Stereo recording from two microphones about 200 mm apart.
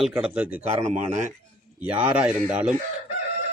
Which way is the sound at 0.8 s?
35° right (ahead or behind).